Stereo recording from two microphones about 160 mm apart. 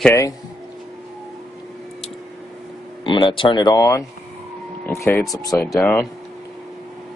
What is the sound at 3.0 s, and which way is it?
Speech, 30° left (ahead or behind).